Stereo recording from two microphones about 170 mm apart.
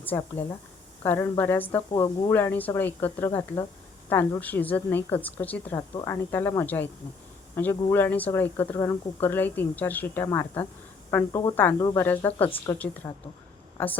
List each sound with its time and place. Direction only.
0.0 s speech: 10° left (ahead or behind)
5.9 s a woman's voice: 25° left (ahead or behind)